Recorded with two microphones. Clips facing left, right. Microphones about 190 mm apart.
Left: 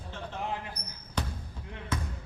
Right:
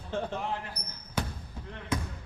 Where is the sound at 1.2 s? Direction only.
10° right (ahead or behind).